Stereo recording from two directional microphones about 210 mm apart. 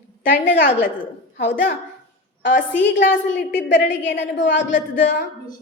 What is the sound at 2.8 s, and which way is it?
Speech, 55° left (ahead or behind).